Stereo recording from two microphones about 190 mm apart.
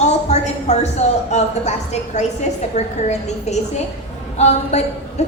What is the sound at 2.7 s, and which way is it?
A woman's voice, 35° left (ahead or behind).